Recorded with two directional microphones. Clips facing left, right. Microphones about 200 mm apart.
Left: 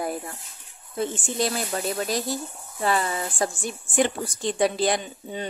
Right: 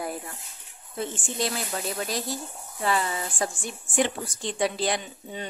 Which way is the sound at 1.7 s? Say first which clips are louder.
Left 4 dB; 45° left (ahead or behind).